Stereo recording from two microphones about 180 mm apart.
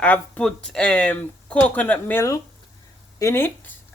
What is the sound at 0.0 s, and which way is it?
Speech, 5° left (ahead or behind).